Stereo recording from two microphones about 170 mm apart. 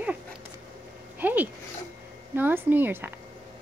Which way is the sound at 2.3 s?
10° right (ahead or behind).